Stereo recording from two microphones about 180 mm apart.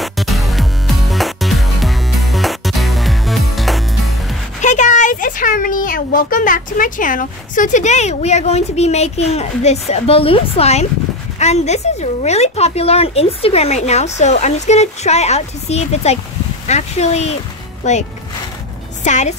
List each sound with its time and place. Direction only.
0.0 s music: centre (ahead or behind)
4.6 s a child's voice: 40° left (ahead or behind)
19.0 s speech: 40° left (ahead or behind)